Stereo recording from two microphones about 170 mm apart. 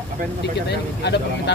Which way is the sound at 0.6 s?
80° left.